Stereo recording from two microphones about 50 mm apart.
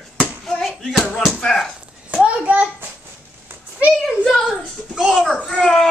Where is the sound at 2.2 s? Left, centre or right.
Right.